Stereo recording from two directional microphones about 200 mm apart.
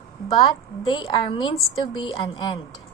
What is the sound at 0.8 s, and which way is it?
A woman's voice, 25° left (ahead or behind).